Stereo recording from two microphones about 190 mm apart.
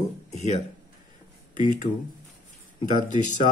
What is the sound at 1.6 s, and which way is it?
Speech, 40° left (ahead or behind).